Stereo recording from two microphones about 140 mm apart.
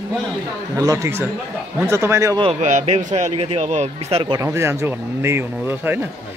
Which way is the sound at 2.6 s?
55° right (ahead or behind).